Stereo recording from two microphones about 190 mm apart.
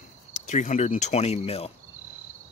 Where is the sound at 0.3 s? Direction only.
40° left (ahead or behind).